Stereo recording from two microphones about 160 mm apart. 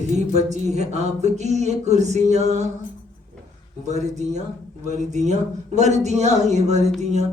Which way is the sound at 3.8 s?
45° right (ahead or behind).